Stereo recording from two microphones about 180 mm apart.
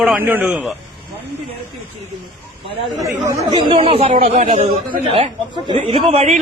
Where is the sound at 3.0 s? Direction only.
15° right (ahead or behind).